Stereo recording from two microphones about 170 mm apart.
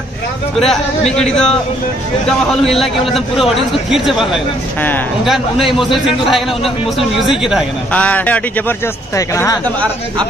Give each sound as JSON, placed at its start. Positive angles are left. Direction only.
{"t": 0.6, "sound": "a man's voice", "side_deg": 5}
{"t": 7.9, "sound": "a man's voice", "side_deg": 10}